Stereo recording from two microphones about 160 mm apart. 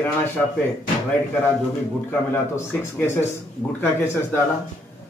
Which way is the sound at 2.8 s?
15° left (ahead or behind).